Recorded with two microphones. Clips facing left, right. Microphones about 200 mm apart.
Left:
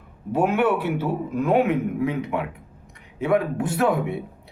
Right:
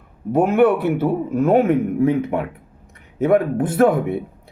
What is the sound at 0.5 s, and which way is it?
Speech, 55° right (ahead or behind).